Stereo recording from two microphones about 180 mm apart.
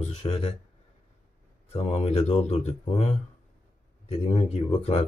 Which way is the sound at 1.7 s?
35° left (ahead or behind).